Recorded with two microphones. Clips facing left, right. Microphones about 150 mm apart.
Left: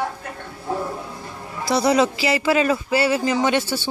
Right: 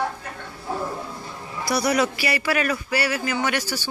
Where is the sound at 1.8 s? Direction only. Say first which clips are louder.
Left 4 dB; 25° left (ahead or behind).